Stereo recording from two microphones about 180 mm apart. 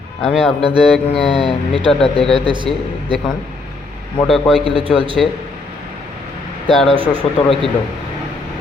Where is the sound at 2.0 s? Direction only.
Centre (ahead or behind).